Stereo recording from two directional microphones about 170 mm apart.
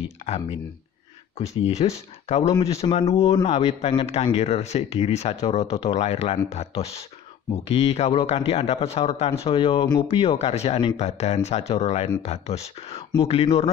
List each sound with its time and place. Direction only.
0.0 s a man's voice: 40° left (ahead or behind)